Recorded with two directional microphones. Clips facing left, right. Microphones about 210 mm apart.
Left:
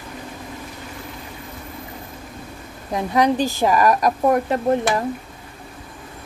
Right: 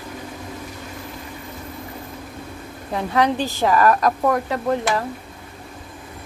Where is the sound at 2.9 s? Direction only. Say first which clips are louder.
Left 2 dB; 15° left (ahead or behind).